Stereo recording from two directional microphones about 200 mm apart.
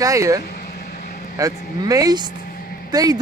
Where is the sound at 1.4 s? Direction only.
15° right (ahead or behind).